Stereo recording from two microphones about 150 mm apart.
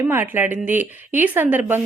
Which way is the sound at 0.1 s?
15° right (ahead or behind).